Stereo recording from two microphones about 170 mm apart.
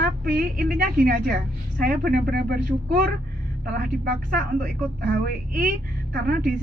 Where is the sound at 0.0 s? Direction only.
60° right (ahead or behind).